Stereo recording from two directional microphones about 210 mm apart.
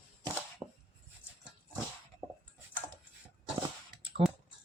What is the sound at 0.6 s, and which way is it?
Chopping, 20° right (ahead or behind).